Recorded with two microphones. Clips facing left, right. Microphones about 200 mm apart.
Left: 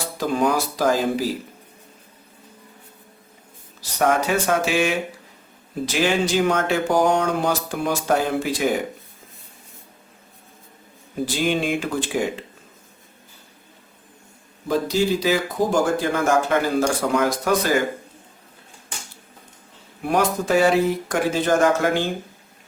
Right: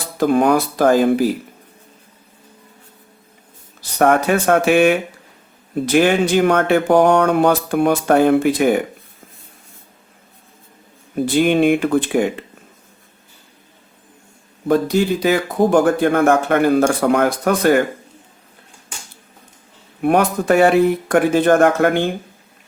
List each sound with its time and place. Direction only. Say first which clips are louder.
0.2 s speech: right 7 dB; 60° right (ahead or behind)
3.8 s speech: right 5 dB; 55° right (ahead or behind)
11.1 s speech: right 7 dB; 60° right (ahead or behind)
14.7 s speech: right 5 dB; 60° right (ahead or behind)
20.0 s speech: right 5 dB; 60° right (ahead or behind)